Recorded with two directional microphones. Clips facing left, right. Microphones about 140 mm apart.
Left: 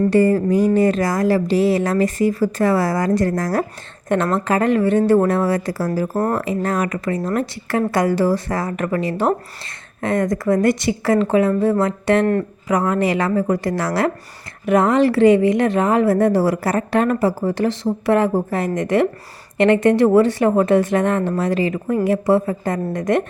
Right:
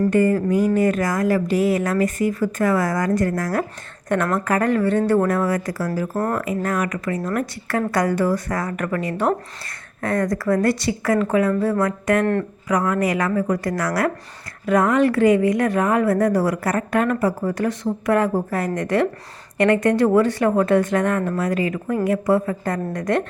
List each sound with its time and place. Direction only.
0.1 s speech: 35° left (ahead or behind)
4.1 s a woman's voice: 25° left (ahead or behind)
5.2 s a woman's voice: 30° left (ahead or behind)